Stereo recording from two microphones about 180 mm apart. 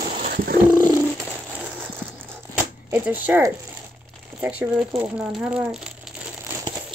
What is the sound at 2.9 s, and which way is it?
Speech, 10° right (ahead or behind).